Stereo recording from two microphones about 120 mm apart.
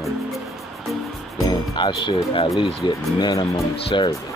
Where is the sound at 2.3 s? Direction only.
55° left (ahead or behind).